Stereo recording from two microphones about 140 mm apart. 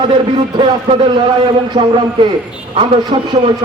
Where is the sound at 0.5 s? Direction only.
35° right (ahead or behind).